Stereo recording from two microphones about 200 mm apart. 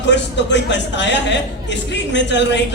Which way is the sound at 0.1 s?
60° left (ahead or behind).